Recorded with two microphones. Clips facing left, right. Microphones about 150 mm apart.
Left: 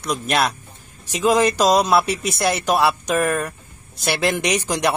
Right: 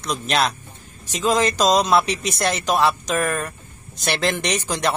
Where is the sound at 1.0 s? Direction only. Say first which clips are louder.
Left 3 dB; 10° left (ahead or behind).